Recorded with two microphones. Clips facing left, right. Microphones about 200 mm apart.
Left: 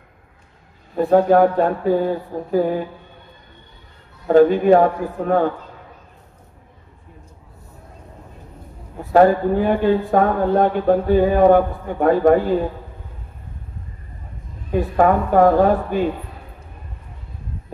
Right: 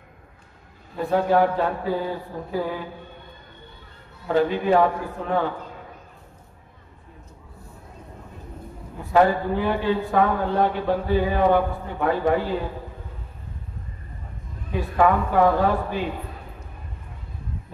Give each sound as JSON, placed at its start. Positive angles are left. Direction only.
{"t": 0.9, "sound": "speech", "side_deg": 45}
{"t": 4.3, "sound": "speech", "side_deg": 50}
{"t": 9.1, "sound": "speech", "side_deg": 45}
{"t": 15.0, "sound": "speech", "side_deg": 45}